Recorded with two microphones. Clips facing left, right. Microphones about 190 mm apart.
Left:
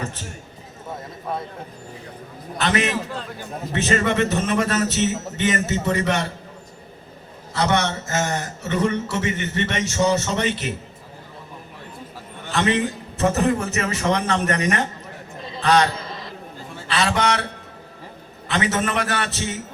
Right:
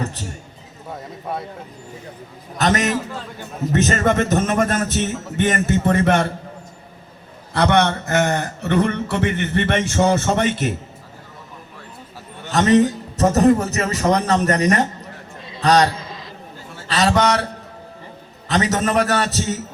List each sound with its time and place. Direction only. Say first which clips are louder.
2.6 s a man's voice: right 3 dB; 40° right (ahead or behind)
7.5 s a man's voice: right 4 dB; 60° right (ahead or behind)
12.5 s a man's voice: right 7 dB; 40° right (ahead or behind)
16.9 s a man's voice: right 4 dB; 40° right (ahead or behind)
18.4 s a man's voice: right 3 dB; 40° right (ahead or behind)